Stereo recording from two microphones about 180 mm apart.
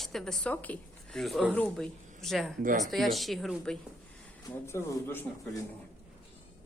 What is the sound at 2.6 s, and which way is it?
Speech, 45° right (ahead or behind).